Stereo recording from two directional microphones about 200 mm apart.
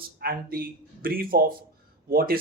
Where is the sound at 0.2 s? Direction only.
50° right (ahead or behind).